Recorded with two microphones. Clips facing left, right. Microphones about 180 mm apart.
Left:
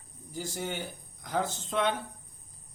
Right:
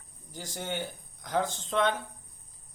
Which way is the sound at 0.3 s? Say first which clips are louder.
Even; 5° left (ahead or behind).